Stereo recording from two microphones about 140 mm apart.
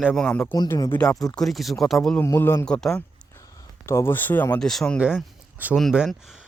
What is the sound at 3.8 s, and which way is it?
Speech, 15° left (ahead or behind).